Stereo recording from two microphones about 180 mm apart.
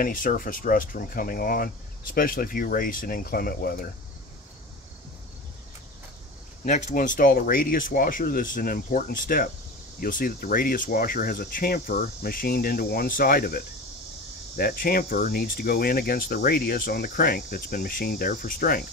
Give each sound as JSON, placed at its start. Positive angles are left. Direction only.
{"t": 0.0, "sound": "speech", "side_deg": 50}
{"t": 6.6, "sound": "speech", "side_deg": 40}
{"t": 14.6, "sound": "speech", "side_deg": 55}